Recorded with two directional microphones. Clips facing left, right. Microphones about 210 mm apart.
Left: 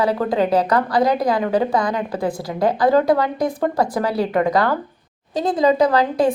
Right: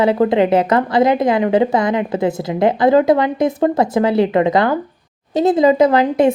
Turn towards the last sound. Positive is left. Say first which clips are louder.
# right 4 dB
turn(degrees=-25)  # may be behind; listen again after turning